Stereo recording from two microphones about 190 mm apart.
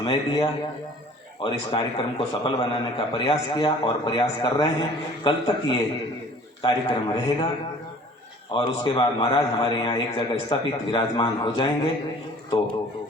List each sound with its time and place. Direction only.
0.0 s a man's voice: 25° left (ahead or behind)
8.6 s a man's voice: 25° left (ahead or behind)